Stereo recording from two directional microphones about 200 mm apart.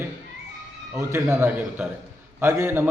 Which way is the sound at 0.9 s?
15° right (ahead or behind).